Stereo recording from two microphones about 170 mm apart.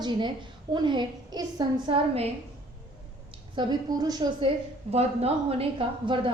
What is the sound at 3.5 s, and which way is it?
A woman's voice, 25° right (ahead or behind).